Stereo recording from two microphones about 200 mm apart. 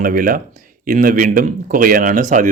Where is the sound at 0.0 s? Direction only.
45° right (ahead or behind).